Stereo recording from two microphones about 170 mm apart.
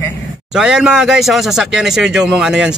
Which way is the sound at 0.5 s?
5° right (ahead or behind).